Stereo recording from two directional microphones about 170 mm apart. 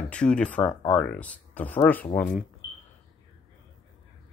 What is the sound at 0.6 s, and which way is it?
Speech, 30° left (ahead or behind).